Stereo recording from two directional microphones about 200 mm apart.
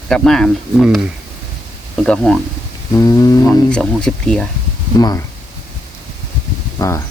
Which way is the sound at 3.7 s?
5° left (ahead or behind).